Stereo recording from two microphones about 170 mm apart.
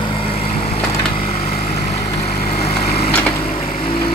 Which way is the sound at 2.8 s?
35° left (ahead or behind).